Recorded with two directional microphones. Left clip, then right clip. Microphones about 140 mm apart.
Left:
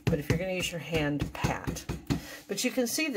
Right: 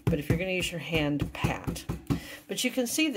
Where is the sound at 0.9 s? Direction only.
25° right (ahead or behind).